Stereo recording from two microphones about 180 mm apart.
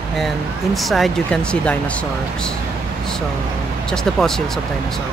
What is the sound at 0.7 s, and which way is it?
Speech, centre (ahead or behind).